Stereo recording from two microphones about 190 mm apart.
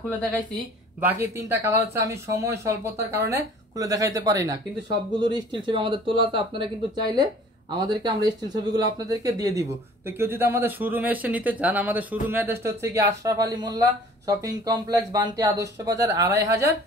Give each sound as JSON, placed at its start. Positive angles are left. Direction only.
{"t": 1.0, "sound": "speech", "side_deg": -15}